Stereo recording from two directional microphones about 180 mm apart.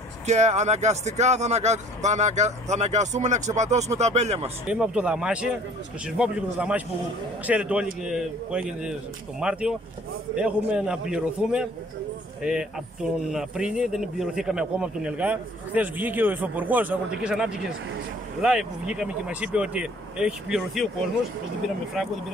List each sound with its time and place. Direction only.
0.3 s speech: 40° right (ahead or behind)
4.6 s a man's voice: 5° right (ahead or behind)
22.0 s a man's voice: centre (ahead or behind)